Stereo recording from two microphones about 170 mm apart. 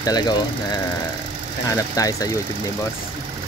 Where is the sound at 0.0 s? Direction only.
25° left (ahead or behind).